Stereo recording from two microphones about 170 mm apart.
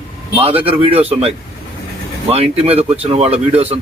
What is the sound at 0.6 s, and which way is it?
Speech, 35° right (ahead or behind).